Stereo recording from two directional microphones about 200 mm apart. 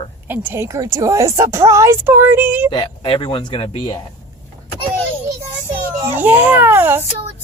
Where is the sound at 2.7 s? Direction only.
25° left (ahead or behind).